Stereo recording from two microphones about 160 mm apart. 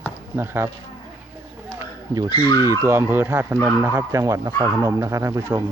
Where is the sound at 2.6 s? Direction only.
20° right (ahead or behind).